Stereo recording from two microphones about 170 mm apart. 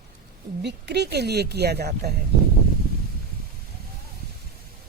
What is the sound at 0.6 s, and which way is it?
Speech, 80° right.